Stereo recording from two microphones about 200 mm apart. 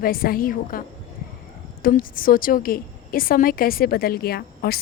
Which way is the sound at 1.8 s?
45° left (ahead or behind).